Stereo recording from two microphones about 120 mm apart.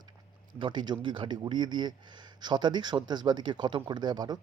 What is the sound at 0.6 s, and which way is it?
Speech, 40° right (ahead or behind).